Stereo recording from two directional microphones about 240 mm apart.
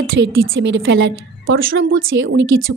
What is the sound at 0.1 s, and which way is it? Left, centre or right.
A woman's voice, right.